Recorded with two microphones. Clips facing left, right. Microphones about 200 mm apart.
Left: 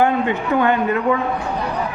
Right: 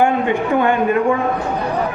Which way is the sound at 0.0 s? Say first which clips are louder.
Right 2 dB; 15° right (ahead or behind).